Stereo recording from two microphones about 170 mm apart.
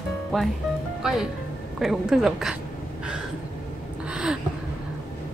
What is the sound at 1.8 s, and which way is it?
Speech, centre (ahead or behind).